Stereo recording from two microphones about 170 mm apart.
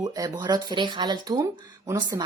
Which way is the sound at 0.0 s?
20° right (ahead or behind).